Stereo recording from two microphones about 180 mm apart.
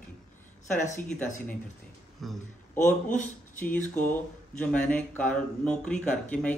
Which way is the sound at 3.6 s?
10° left (ahead or behind).